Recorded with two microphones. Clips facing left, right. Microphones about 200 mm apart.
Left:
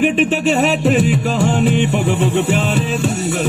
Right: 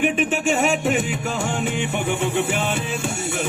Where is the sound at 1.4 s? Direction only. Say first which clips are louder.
Left 10 dB; 75° left (ahead or behind).